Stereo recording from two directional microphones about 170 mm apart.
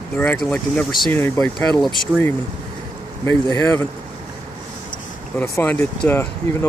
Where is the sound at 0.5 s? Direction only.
5° left (ahead or behind).